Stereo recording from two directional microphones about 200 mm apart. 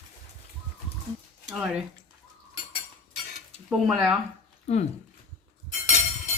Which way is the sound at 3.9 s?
Centre (ahead or behind).